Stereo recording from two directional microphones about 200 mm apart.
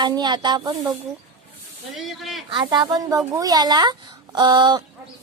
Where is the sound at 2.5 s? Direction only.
20° right (ahead or behind).